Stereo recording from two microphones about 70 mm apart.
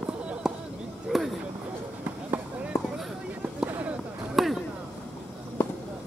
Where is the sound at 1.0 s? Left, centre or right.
Centre.